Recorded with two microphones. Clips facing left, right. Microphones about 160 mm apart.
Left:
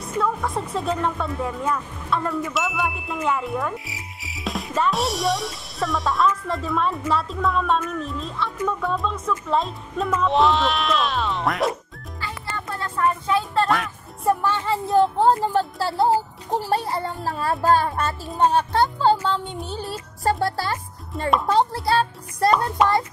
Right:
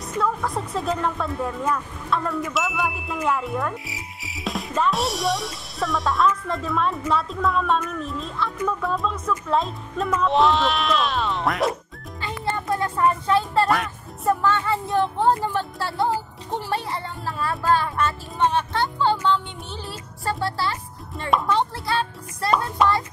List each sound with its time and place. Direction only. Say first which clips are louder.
0.0 s speech: left 1 dB; centre (ahead or behind)
12.7 s a sound: right 3 dB; 15° right (ahead or behind)
13.3 s speech: right 1 dB; centre (ahead or behind)
14.5 s child singing: even; 25° left (ahead or behind)
15.5 s speech: left 4 dB; 35° left (ahead or behind)